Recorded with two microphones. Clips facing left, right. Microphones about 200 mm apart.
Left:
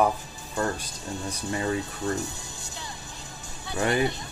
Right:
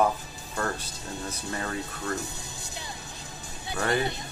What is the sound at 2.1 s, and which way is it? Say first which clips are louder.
Music: left 3 dB; 20° right (ahead or behind).